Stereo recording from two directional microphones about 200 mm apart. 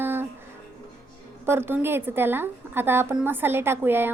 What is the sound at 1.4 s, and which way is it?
A woman's voice, 10° right (ahead or behind).